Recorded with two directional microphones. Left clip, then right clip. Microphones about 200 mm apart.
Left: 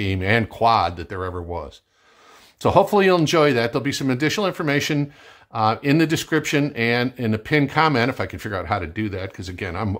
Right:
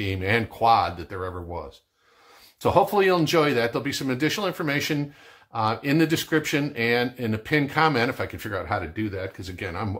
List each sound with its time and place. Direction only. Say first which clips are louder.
0.0 s speech: left 4 dB; 45° left (ahead or behind)
2.6 s speech: left 4 dB; 45° left (ahead or behind)